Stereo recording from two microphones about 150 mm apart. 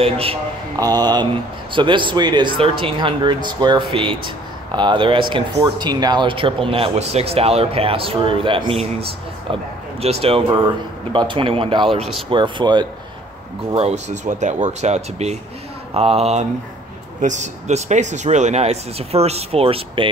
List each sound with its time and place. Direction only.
0.0 s speech: 40° right (ahead or behind)
0.7 s mantra: 25° right (ahead or behind)
1.7 s speech: 35° right (ahead or behind)
10.0 s speech: 40° right (ahead or behind)
13.7 s speech: 45° right (ahead or behind)